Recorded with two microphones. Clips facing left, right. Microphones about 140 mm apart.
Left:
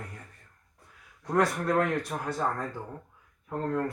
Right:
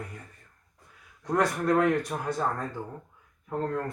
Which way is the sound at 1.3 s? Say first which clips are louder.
Right 1 dB; centre (ahead or behind).